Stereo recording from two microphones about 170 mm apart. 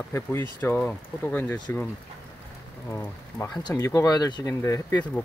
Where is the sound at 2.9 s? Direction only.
15° left (ahead or behind).